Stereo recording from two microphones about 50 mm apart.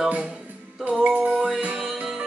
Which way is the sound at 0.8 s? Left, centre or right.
Right.